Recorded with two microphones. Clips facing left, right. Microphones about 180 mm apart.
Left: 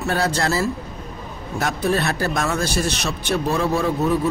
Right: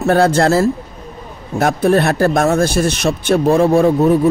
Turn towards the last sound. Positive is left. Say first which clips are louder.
# right 8 dB
turn(degrees=-50)  # may be behind; listen again after turning